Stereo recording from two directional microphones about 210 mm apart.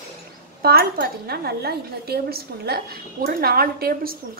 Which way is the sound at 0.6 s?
45° right (ahead or behind).